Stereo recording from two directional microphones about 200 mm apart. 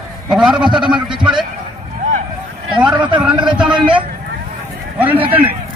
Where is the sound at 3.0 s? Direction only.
25° right (ahead or behind).